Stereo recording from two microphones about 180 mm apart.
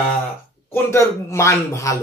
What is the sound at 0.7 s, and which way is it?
Speech, 15° left (ahead or behind).